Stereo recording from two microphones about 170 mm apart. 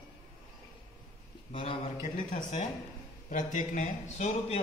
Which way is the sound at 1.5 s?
30° left (ahead or behind).